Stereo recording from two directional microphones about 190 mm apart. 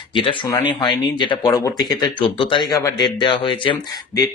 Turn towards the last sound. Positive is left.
turn(degrees=25)  # may be behind; listen again after turning